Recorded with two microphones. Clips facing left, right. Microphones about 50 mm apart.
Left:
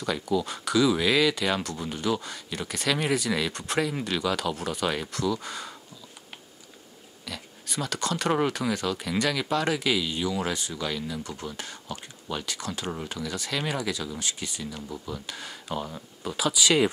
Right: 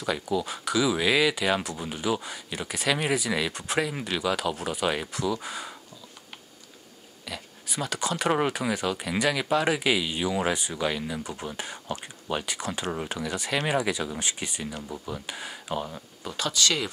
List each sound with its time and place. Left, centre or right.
0.0 s speech: centre
7.2 s speech: centre; by 14.7 s right
14.7 s speech: centre